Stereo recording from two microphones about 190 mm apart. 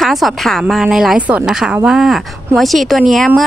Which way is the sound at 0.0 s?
Centre (ahead or behind).